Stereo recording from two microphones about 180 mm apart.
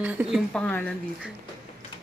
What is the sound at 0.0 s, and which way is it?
Speech, 5° right (ahead or behind).